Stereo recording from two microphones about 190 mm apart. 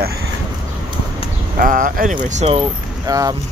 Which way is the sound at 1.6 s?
45° right (ahead or behind).